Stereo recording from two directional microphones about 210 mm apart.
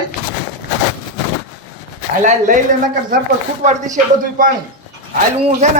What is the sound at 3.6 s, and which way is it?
Speech, 35° right (ahead or behind).